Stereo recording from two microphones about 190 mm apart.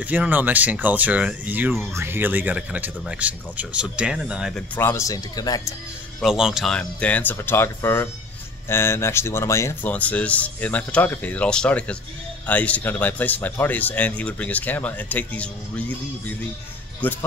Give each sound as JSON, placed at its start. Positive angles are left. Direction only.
{"t": 0.0, "sound": "speech", "side_deg": -10}
{"t": 4.7, "sound": "speech", "side_deg": 15}
{"t": 6.2, "sound": "speech", "side_deg": -5}